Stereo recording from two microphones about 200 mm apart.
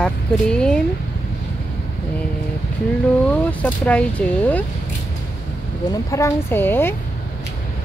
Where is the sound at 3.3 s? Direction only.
5° left (ahead or behind).